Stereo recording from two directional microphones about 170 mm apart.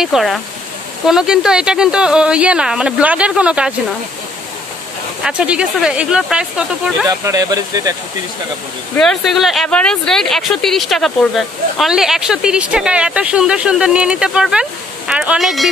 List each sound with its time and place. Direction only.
0.0 s speech: centre (ahead or behind)
5.2 s speech: 5° right (ahead or behind)
7.1 s speech: 20° right (ahead or behind)
8.9 s speech: 5° left (ahead or behind)